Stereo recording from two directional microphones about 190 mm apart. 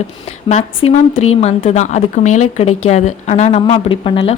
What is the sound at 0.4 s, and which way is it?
A woman's voice, 30° left (ahead or behind).